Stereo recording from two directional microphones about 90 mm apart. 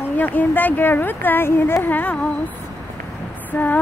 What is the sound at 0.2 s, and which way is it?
Speech, 20° left (ahead or behind).